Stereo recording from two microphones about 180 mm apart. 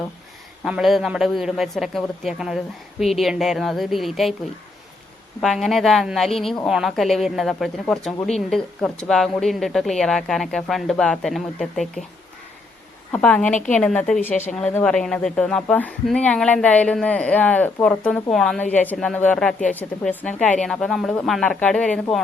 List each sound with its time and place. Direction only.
0.6 s a woman's voice: centre (ahead or behind)
5.4 s a woman's voice: centre (ahead or behind)
13.1 s a woman's voice: 5° left (ahead or behind)
13.5 s a woman's voice: 45° left (ahead or behind)
13.7 s a woman's voice: 5° left (ahead or behind)